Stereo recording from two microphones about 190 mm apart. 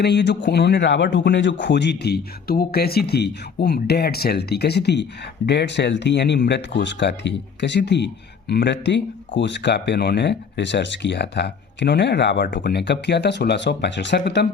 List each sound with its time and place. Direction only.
0.0 s speech: 65° left (ahead or behind)